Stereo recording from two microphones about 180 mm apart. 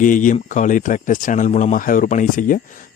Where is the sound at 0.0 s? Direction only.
45° left (ahead or behind).